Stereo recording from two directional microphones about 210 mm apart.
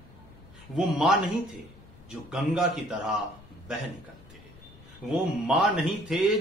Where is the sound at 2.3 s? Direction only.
5° right (ahead or behind).